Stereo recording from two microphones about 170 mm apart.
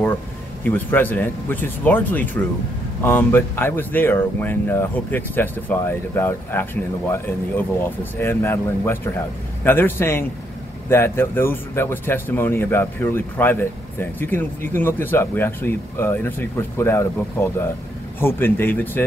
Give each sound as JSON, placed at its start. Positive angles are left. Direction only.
{"t": 0.7, "sound": "speech", "side_deg": 10}